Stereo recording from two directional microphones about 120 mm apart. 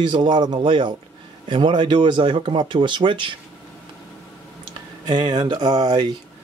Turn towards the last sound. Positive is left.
turn(degrees=-35)  # may be behind; listen again after turning